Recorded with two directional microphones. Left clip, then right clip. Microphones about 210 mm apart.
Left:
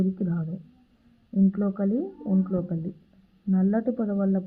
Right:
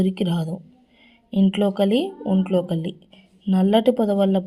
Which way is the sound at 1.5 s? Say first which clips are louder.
Right 9 dB; 35° right (ahead or behind).